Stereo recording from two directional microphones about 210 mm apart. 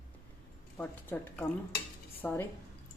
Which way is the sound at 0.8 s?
10° left (ahead or behind).